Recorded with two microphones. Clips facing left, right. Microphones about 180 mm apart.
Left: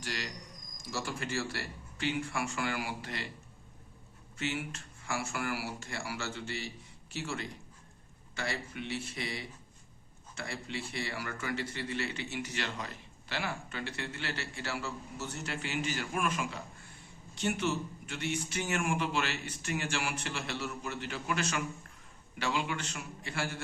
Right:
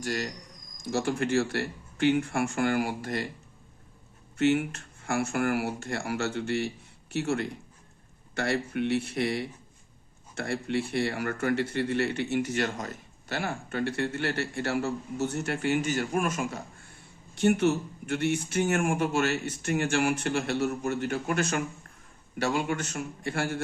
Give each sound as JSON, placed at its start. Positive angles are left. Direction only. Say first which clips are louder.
{"t": 0.0, "sound": "a man's voice", "louder": "right 8 dB", "side_deg": -45}
{"t": 4.4, "sound": "speech", "louder": "right 12 dB", "side_deg": -60}
{"t": 17.4, "sound": "speech", "louder": "right 9 dB", "side_deg": -60}